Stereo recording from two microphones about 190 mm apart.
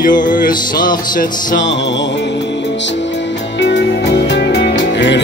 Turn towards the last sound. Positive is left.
turn(degrees=70)  # may be behind; listen again after turning